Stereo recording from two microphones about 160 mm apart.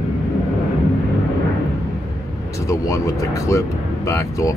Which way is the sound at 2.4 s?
20° left (ahead or behind).